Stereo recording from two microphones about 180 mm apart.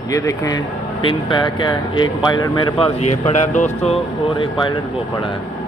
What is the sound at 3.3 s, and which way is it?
Speech, 40° left (ahead or behind).